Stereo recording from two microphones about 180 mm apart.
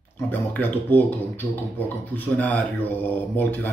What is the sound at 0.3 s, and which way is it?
Speech, 10° left (ahead or behind).